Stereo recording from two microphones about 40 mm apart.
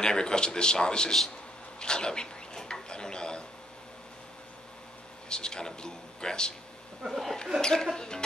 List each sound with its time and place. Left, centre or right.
0.0 s speech: centre
1.8 s a sound: left
5.3 s speech: centre
7.1 s speech: centre
7.6 s speech: centre